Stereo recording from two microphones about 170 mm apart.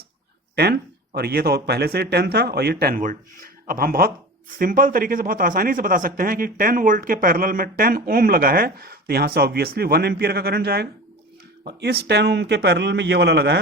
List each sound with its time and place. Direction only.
0.5 s a man's voice: 70° right (ahead or behind)